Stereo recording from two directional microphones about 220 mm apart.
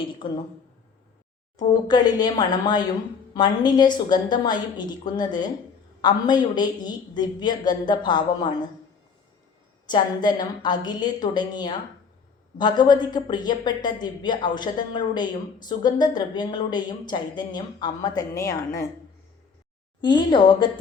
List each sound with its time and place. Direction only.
1.5 s a woman's voice: 20° left (ahead or behind)
9.8 s a woman's voice: 20° left (ahead or behind)
20.0 s a woman's voice: 20° left (ahead or behind)